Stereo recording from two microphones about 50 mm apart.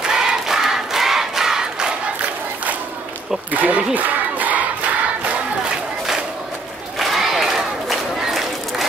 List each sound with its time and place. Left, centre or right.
0.0 s crowd: centre
3.5 s crowd: right
7.0 s crowd: centre